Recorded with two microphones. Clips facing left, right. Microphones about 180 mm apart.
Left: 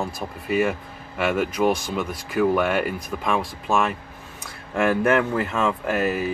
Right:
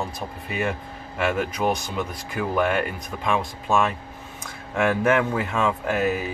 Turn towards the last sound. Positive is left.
turn(degrees=0)  # may be behind; listen again after turning